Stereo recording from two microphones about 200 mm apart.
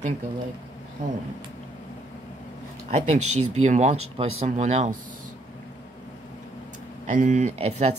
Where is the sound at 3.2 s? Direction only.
90° right.